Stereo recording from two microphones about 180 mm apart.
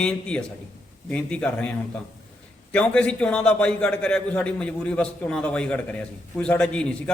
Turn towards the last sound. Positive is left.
turn(degrees=5)  # may be behind; listen again after turning